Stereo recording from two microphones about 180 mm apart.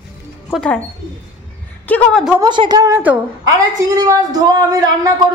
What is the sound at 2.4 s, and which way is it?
Speech, 25° right (ahead or behind).